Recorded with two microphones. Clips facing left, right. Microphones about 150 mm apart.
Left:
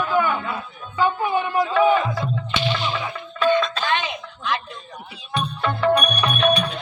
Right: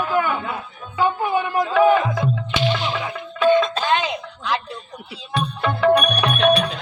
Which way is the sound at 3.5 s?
50° right (ahead or behind).